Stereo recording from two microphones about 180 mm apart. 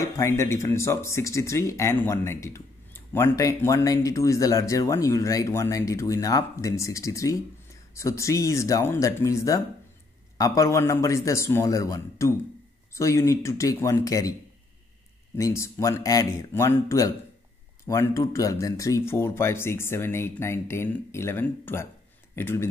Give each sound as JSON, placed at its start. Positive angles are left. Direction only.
{"t": 0.0, "sound": "speech", "side_deg": 15}
{"t": 15.3, "sound": "speech", "side_deg": 15}